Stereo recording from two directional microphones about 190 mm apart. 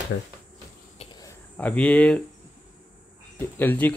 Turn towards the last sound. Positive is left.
turn(degrees=10)  # may be behind; listen again after turning